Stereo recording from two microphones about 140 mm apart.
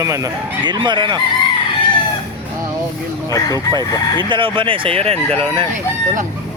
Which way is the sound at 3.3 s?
25° left (ahead or behind).